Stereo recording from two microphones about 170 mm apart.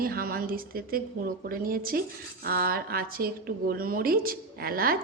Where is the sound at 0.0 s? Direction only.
60° right (ahead or behind).